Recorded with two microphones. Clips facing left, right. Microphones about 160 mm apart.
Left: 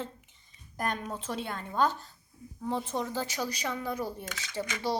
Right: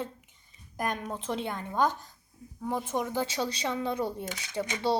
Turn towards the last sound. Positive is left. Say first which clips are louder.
# right 3 dB
turn(degrees=-25)  # may be behind; listen again after turning